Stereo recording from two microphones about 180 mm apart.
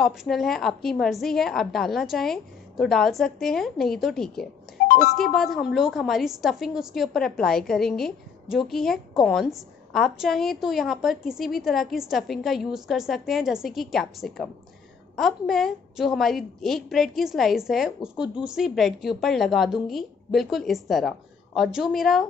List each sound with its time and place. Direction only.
0.0 s a woman's voice: centre (ahead or behind)
4.8 s music: 50° left (ahead or behind)
5.4 s a woman's voice: centre (ahead or behind)